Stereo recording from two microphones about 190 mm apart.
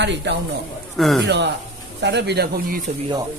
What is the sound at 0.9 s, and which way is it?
Speech, centre (ahead or behind).